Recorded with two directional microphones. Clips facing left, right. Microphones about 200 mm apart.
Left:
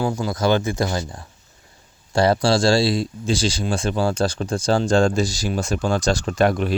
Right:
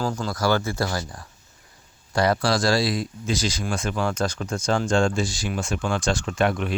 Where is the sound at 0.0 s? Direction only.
15° left (ahead or behind).